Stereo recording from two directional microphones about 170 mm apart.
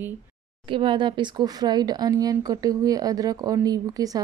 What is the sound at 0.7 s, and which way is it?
Speech, 30° right (ahead or behind).